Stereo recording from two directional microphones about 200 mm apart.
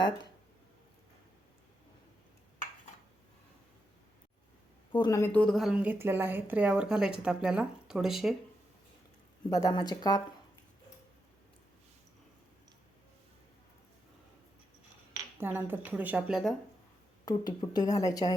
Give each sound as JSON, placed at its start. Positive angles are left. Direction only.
{"t": 4.9, "sound": "speech", "side_deg": 20}
{"t": 9.5, "sound": "a woman's voice", "side_deg": 20}
{"t": 15.4, "sound": "a woman's voice", "side_deg": -10}
{"t": 17.2, "sound": "a woman's voice", "side_deg": 20}